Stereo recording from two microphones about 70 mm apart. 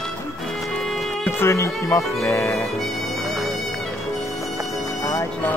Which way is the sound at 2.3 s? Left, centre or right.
Left.